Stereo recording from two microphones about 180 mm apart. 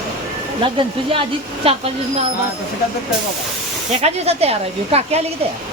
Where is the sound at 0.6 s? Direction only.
30° right (ahead or behind).